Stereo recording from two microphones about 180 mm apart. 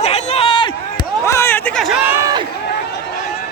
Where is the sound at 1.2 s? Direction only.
15° left (ahead or behind).